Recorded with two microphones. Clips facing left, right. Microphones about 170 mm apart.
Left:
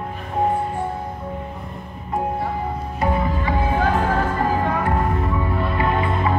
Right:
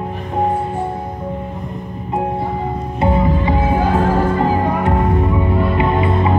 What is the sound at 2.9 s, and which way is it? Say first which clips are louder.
Music: right 6 dB; 25° right (ahead or behind).